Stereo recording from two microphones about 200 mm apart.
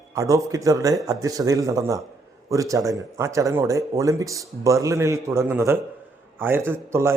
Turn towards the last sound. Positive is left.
turn(degrees=-10)  # may be behind; listen again after turning